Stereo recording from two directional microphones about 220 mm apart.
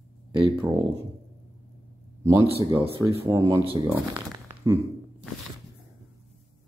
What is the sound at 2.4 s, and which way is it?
Speech, 25° right (ahead or behind).